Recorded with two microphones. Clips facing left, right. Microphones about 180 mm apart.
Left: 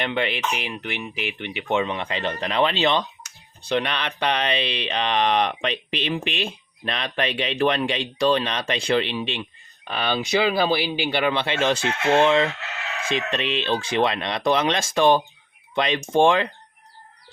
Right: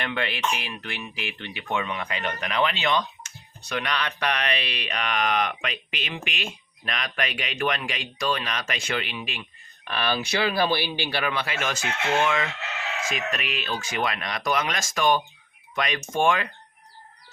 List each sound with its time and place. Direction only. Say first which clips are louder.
0.0 s speech: left 3 dB; 20° left (ahead or behind)